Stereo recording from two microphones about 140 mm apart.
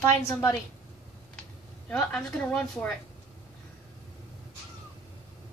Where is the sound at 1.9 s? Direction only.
5° left (ahead or behind).